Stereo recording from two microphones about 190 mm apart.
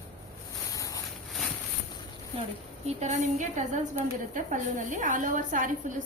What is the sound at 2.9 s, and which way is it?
A woman's voice, 35° right (ahead or behind).